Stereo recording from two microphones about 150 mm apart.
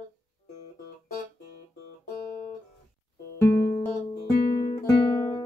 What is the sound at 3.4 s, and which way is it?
Music, 15° left (ahead or behind).